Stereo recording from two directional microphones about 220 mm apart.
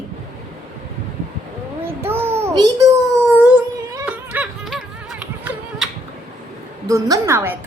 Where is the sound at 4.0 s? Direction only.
5° right (ahead or behind).